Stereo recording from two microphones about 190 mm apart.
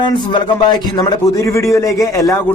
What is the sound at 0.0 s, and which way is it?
A man's voice, 25° left (ahead or behind).